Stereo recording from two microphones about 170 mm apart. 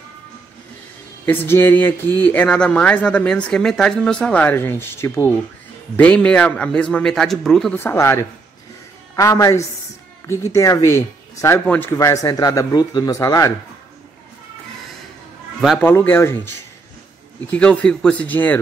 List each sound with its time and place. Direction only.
1.2 s a man's voice: 10° left (ahead or behind)
7.8 s speech: 15° left (ahead or behind)
15.8 s speech: 10° left (ahead or behind)
17.5 s speech: 10° left (ahead or behind)